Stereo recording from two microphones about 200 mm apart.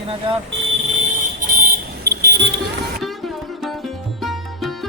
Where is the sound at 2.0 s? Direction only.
55° right (ahead or behind).